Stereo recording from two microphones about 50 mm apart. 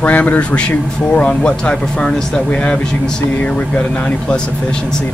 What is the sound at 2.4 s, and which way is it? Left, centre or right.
Speech, centre.